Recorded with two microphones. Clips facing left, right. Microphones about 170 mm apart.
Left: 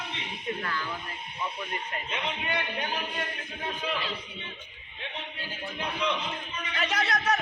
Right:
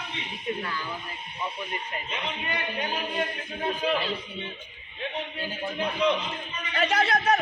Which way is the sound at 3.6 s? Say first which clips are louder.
Right 6 dB; 40° right (ahead or behind).